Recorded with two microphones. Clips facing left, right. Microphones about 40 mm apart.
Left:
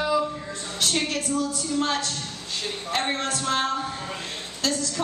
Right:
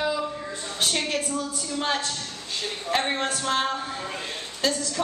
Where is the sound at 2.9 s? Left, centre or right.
Centre.